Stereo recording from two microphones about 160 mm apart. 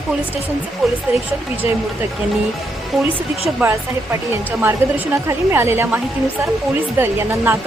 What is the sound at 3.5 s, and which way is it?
A woman's voice, 15° right (ahead or behind).